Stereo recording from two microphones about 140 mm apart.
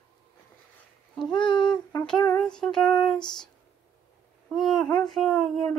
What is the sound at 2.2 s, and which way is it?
Speech, 10° left (ahead or behind).